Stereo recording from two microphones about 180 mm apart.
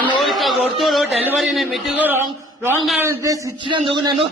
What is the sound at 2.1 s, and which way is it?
A man's voice, 10° right (ahead or behind).